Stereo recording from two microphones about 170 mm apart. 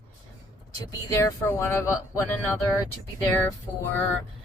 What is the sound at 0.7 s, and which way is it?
Speech, 20° left (ahead or behind).